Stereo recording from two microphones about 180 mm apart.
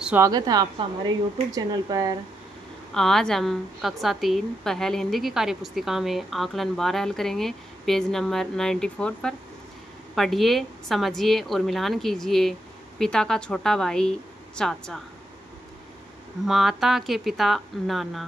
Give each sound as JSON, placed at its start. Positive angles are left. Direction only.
{"t": 0.0, "sound": "a woman's voice", "side_deg": -10}
{"t": 0.3, "sound": "a woman's voice", "side_deg": -20}
{"t": 2.9, "sound": "a woman's voice", "side_deg": 5}
{"t": 16.4, "sound": "a woman's voice", "side_deg": 0}